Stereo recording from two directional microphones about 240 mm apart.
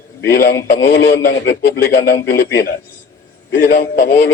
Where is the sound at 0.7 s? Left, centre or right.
Left.